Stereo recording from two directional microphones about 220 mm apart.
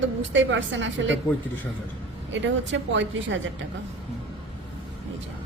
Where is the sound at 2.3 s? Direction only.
55° right (ahead or behind).